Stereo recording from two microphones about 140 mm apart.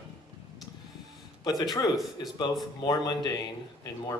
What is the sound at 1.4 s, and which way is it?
Speech, 25° left (ahead or behind).